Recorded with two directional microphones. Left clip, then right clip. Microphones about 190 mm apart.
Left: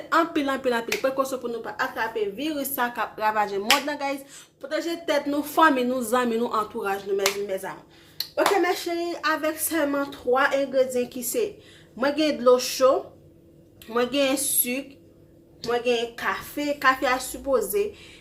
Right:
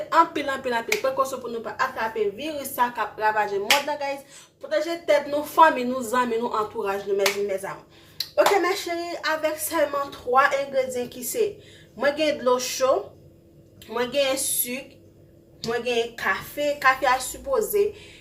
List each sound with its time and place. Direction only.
0.1 s speech: 40° left (ahead or behind)
13.9 s speech: 40° left (ahead or behind)